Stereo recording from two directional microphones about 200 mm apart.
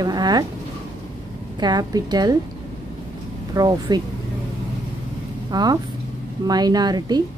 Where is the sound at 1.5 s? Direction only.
20° right (ahead or behind).